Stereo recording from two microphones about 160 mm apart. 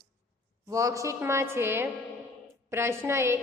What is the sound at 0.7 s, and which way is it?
A woman's voice, 20° right (ahead or behind).